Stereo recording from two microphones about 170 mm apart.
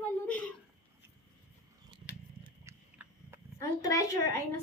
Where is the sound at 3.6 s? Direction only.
20° left (ahead or behind).